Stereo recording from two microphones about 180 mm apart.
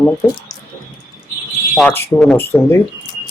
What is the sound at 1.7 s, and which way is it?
Speech, 5° left (ahead or behind).